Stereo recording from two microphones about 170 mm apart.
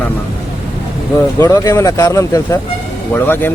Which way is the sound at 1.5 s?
20° left (ahead or behind).